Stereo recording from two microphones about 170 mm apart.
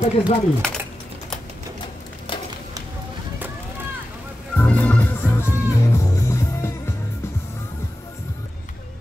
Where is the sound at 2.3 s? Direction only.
30° left (ahead or behind).